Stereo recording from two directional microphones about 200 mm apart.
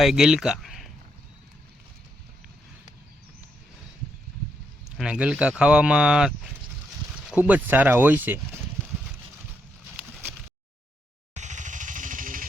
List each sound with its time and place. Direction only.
0.0 s speech: centre (ahead or behind)
4.9 s speech: 5° right (ahead or behind)
11.3 s motorcycle: 35° right (ahead or behind)